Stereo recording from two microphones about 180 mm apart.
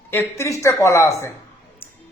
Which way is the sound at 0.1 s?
15° left (ahead or behind).